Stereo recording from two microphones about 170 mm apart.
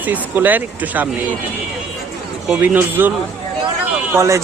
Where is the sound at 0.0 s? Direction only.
10° right (ahead or behind).